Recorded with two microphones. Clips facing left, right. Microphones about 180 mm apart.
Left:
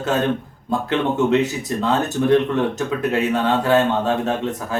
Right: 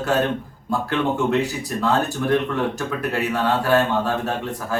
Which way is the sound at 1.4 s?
20° left (ahead or behind).